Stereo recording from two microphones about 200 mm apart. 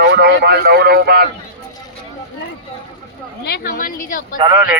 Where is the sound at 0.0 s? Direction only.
55° right (ahead or behind).